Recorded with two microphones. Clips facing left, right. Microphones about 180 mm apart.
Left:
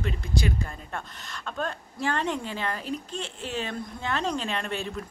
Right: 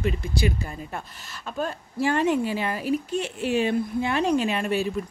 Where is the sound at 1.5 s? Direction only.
10° right (ahead or behind).